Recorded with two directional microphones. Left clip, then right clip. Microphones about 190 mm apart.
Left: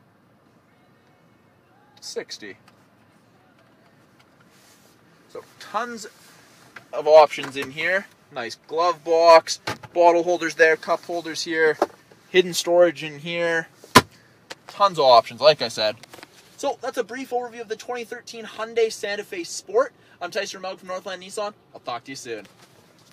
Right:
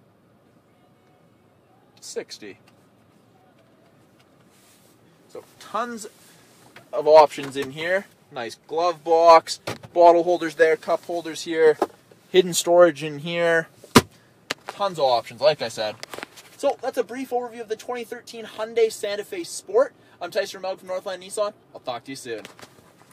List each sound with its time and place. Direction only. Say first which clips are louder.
2.1 s speech: even; centre (ahead or behind)
5.3 s a sound: left 1 dB; centre (ahead or behind)
7.1 s speech: even; centre (ahead or behind)
12.3 s speech: right 1 dB; 35° right (ahead or behind)
14.8 s speech: left 7 dB; 35° left (ahead or behind)
16.0 s speech: right 8 dB; centre (ahead or behind)